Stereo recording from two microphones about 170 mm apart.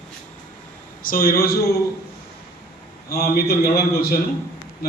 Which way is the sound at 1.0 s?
60° left (ahead or behind).